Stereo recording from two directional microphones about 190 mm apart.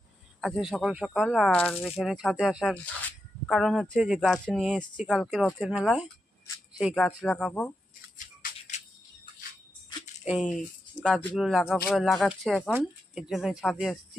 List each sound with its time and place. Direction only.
0.4 s speech: centre (ahead or behind)
8.7 s a sound: 40° left (ahead or behind)
10.3 s speech: 5° right (ahead or behind)